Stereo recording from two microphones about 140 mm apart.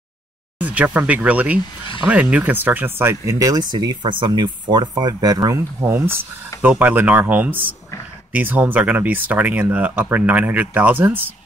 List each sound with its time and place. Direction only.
0.6 s speech: 10° right (ahead or behind)